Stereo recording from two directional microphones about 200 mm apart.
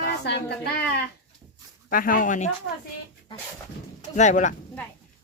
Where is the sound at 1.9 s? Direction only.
45° left (ahead or behind).